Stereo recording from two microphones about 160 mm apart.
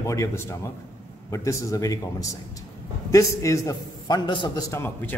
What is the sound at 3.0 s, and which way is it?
A man's voice, 20° left (ahead or behind).